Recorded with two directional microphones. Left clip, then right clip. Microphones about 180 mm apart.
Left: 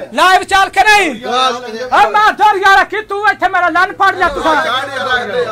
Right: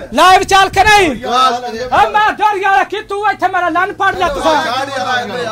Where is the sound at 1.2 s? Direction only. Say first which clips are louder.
Right 2 dB; 15° right (ahead or behind).